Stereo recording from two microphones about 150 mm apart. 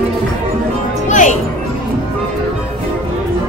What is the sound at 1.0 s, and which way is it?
Music, 55° left (ahead or behind).